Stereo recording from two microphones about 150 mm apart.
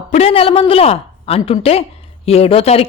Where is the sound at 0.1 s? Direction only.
40° left (ahead or behind).